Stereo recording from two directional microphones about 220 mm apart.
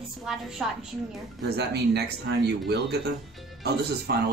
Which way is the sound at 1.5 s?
45° right (ahead or behind).